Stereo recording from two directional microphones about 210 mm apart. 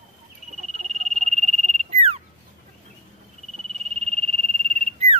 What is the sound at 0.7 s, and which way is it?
Frog, 30° right (ahead or behind).